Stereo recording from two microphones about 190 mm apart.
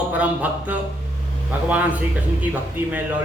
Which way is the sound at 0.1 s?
10° right (ahead or behind).